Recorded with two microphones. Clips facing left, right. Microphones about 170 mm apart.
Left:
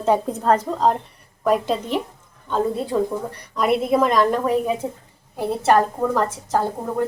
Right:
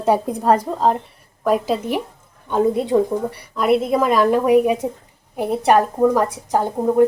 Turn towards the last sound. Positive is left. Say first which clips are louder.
# right 7 dB
turn(degrees=-15)  # may be behind; listen again after turning